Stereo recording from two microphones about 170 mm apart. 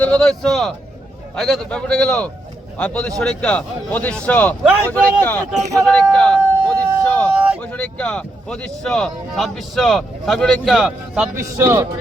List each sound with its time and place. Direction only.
0.0 s speech: 5° left (ahead or behind)
5.5 s a sound: 5° left (ahead or behind)
7.6 s speech: 5° left (ahead or behind)
11.3 s a man's voice: 15° right (ahead or behind)